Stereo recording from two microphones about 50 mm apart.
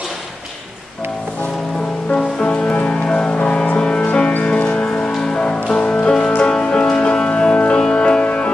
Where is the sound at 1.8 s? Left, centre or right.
Centre.